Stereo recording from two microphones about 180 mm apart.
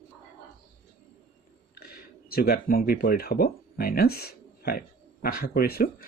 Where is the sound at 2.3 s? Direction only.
55° left (ahead or behind).